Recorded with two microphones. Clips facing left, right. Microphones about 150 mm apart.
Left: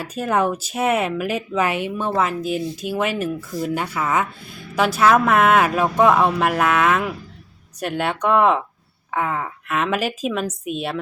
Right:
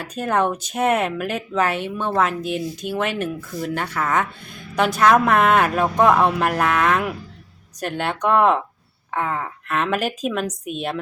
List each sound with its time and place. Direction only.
0.0 s speech: 5° left (ahead or behind)